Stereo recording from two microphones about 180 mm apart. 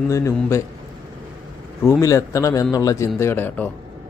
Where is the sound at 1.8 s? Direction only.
15° left (ahead or behind).